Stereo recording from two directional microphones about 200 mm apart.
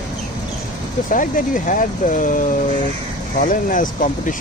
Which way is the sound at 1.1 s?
40° left (ahead or behind).